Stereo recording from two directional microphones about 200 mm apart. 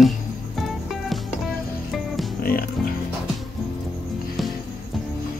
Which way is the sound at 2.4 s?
45° left (ahead or behind).